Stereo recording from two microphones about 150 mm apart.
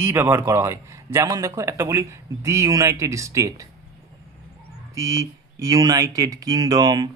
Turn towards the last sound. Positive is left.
turn(degrees=-25)  # may be behind; listen again after turning